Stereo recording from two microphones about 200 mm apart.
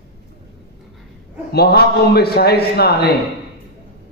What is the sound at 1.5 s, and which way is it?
A man's voice, 55° left (ahead or behind).